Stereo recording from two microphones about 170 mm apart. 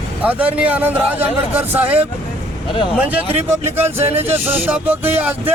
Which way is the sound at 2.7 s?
30° left (ahead or behind).